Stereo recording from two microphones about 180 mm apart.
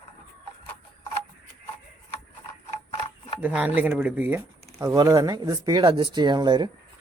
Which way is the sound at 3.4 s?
10° right (ahead or behind).